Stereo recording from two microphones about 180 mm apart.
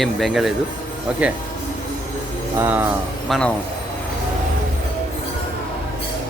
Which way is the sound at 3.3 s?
5° left (ahead or behind).